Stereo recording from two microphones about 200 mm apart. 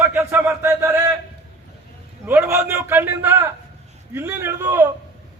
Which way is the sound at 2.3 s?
10° right (ahead or behind).